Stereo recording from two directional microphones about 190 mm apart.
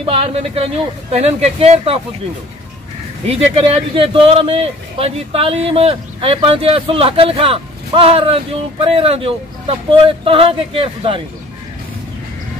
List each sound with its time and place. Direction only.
0.0 s speech: 30° right (ahead or behind)
3.3 s speech: 30° right (ahead or behind)